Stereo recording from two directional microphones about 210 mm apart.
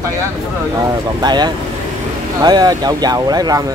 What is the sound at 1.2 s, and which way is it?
Speech, 20° right (ahead or behind).